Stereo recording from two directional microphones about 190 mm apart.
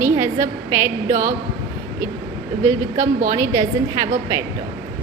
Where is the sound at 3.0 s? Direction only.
40° right (ahead or behind).